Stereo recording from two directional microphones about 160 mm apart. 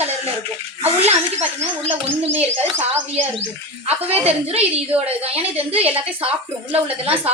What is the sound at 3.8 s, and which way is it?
Speech, 40° right (ahead or behind).